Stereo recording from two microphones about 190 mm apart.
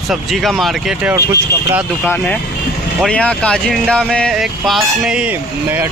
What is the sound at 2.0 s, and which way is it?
Speech, 10° left (ahead or behind).